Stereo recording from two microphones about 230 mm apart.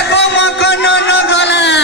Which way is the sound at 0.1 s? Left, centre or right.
Left.